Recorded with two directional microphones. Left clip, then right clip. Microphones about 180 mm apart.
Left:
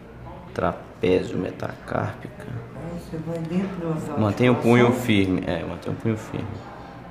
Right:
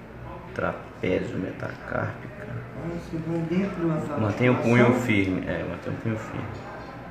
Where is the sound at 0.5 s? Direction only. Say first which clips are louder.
Left 4 dB; 50° left (ahead or behind).